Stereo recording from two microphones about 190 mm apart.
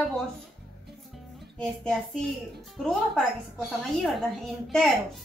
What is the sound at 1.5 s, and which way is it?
Speech, 5° left (ahead or behind).